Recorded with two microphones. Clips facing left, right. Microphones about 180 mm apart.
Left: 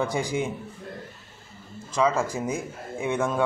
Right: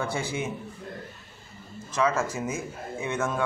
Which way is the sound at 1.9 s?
15° left (ahead or behind).